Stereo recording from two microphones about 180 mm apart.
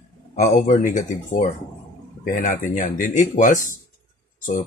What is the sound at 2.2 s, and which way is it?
Speech, 50° left (ahead or behind).